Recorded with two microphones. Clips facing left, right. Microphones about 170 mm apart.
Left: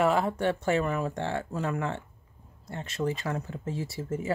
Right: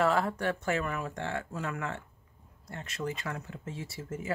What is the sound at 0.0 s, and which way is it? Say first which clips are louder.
Speech: left 3 dB; 20° left (ahead or behind).